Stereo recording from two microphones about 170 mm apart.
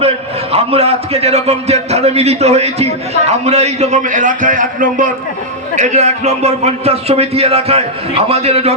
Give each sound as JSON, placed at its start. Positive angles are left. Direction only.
{"t": 0.5, "sound": "a man's voice", "side_deg": -35}